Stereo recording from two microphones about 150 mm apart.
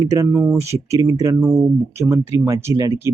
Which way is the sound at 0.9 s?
20° right (ahead or behind).